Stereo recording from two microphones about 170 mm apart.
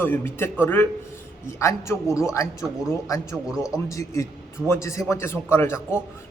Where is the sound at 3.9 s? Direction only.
15° left (ahead or behind).